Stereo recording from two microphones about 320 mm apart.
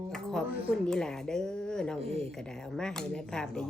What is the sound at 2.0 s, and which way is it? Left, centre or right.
Speech, centre.